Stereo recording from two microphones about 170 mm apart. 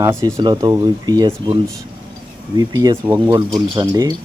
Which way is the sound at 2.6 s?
20° right (ahead or behind).